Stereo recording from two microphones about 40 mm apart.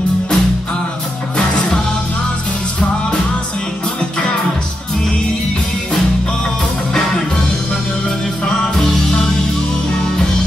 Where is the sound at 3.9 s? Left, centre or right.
Left.